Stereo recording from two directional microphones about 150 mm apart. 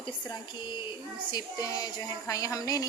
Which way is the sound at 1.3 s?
25° left (ahead or behind).